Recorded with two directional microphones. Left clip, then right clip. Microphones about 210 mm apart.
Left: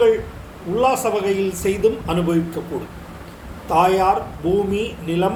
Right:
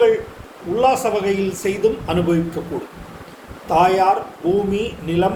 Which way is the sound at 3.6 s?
10° right (ahead or behind).